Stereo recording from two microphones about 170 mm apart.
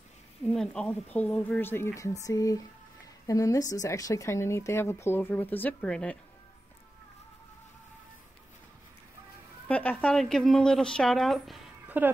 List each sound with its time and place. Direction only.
0.5 s speech: centre (ahead or behind)
9.7 s a sound: 10° left (ahead or behind)
10.0 s speech: centre (ahead or behind)
11.9 s speech: 10° right (ahead or behind)